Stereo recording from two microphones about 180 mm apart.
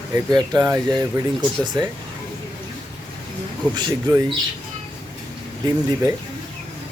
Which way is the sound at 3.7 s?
25° right (ahead or behind).